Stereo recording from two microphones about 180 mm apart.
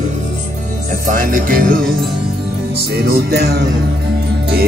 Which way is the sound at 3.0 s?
65° right (ahead or behind).